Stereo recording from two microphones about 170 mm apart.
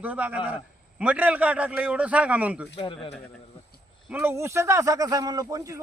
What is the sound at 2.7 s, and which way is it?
Speech, 30° left (ahead or behind).